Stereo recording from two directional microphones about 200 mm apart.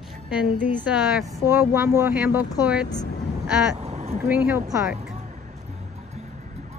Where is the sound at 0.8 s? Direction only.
10° right (ahead or behind).